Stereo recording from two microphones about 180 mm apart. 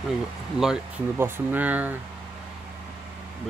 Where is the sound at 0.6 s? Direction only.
10° right (ahead or behind).